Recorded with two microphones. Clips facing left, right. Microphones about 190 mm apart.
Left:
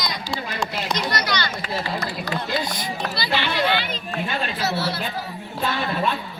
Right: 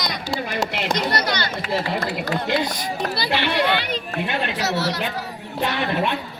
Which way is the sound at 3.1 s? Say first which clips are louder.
Right 2 dB; 60° right (ahead or behind).